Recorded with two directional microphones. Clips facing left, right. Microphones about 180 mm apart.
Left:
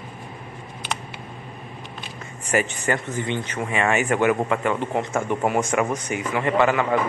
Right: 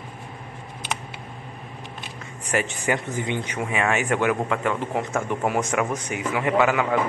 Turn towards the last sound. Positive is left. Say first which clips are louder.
# left 1 dB
turn(degrees=-5)  # may be behind; listen again after turning